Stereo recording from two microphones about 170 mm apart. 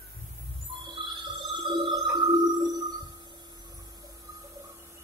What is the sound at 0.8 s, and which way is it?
Music, 30° right (ahead or behind).